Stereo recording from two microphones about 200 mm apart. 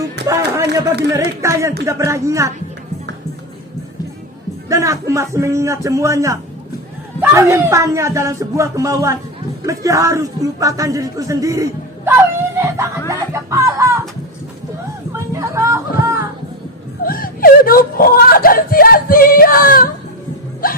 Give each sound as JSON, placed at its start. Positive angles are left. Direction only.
{"t": 0.3, "sound": "speech", "side_deg": -15}
{"t": 4.7, "sound": "a man's voice", "side_deg": -15}
{"t": 13.1, "sound": "music", "side_deg": -15}
{"t": 15.1, "sound": "music", "side_deg": -15}
{"t": 17.0, "sound": "wail", "side_deg": 45}
{"t": 20.6, "sound": "music", "side_deg": 45}